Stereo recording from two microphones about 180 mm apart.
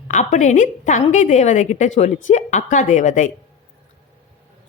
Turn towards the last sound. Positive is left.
turn(degrees=45)  # may be behind; listen again after turning